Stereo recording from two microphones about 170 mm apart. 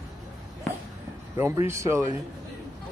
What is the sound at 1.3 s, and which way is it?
Speech, 15° right (ahead or behind).